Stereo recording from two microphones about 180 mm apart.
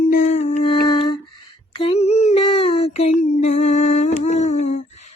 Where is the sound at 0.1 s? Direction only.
45° left (ahead or behind).